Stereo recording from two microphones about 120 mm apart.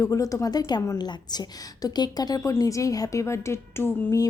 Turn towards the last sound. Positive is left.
turn(degrees=20)  # may be behind; listen again after turning